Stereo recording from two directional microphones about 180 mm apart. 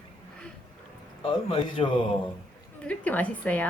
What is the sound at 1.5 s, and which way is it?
Speech, 30° left (ahead or behind).